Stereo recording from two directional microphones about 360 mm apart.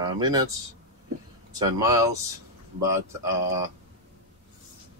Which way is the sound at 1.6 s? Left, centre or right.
Centre.